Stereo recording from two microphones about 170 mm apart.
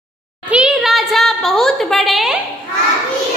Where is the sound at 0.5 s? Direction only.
5° right (ahead or behind).